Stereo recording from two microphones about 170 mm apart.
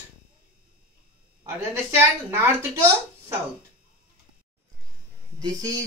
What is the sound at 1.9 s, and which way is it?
Speech, 15° right (ahead or behind).